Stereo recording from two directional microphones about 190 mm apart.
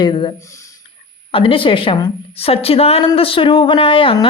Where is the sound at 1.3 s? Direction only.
30° left (ahead or behind).